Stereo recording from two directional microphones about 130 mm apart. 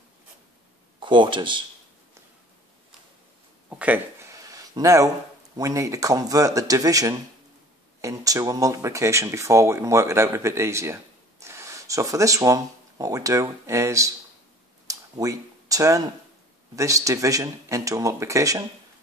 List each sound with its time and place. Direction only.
0.9 s speech: 40° right (ahead or behind)
3.7 s speech: 10° right (ahead or behind)
4.3 s a sound: 25° right (ahead or behind)
5.6 s speech: 25° right (ahead or behind)
14.9 s a sound: 25° right (ahead or behind)
16.7 s speech: 25° right (ahead or behind)